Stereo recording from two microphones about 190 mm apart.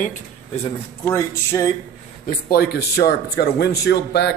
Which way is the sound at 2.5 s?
55° left (ahead or behind).